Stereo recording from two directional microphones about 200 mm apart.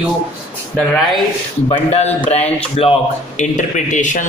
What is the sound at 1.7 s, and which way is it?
Speech, 30° left (ahead or behind).